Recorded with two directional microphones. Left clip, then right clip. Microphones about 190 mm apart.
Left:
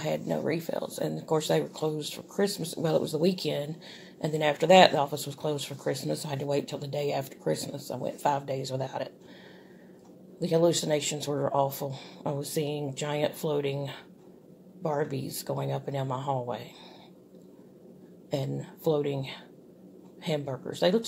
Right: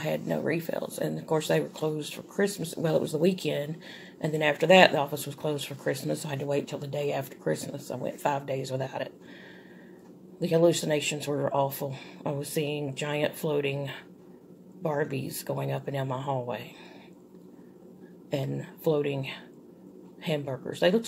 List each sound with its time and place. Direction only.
0.0 s speech: 5° left (ahead or behind)
10.4 s speech: centre (ahead or behind)
18.3 s speech: centre (ahead or behind)